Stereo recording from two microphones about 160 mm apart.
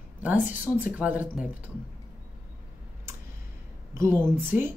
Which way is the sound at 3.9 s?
15° right (ahead or behind).